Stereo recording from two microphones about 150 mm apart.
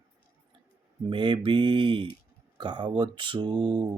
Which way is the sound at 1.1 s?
30° right (ahead or behind).